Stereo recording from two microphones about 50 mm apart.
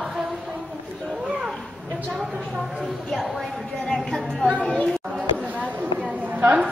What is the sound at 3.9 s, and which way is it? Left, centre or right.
Speech, centre.